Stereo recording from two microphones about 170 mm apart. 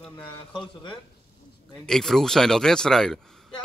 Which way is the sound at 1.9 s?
Centre (ahead or behind).